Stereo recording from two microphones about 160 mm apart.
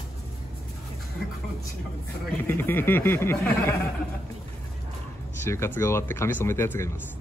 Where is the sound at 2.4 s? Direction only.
15° left (ahead or behind).